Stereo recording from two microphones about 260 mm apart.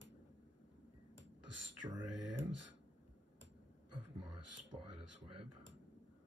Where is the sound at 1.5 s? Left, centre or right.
Right.